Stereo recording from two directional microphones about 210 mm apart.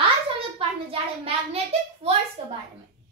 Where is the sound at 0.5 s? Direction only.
25° right (ahead or behind).